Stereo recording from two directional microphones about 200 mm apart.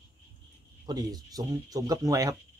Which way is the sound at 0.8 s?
20° right (ahead or behind).